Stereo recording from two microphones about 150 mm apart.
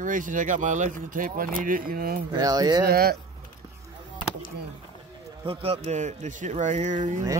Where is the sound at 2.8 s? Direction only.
90° right.